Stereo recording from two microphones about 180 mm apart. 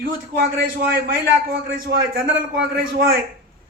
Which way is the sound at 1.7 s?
55° right (ahead or behind).